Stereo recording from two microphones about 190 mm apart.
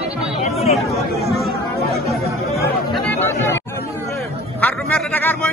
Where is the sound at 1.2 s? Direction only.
Centre (ahead or behind).